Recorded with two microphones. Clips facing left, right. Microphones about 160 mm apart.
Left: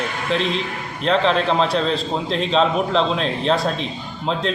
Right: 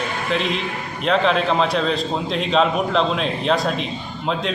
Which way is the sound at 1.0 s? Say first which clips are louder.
Even; 5° right (ahead or behind).